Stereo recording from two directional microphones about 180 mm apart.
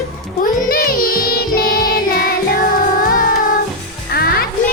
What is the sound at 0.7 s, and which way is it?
Music, 55° left (ahead or behind).